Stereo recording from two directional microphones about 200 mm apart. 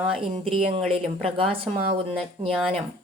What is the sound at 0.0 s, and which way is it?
Speech, 30° right (ahead or behind).